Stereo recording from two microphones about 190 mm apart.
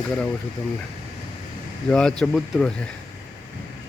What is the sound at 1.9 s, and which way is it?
Speech, 5° left (ahead or behind).